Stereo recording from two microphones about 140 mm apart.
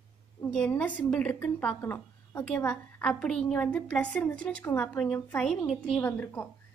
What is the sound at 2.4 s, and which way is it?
A woman's voice, 10° left (ahead or behind).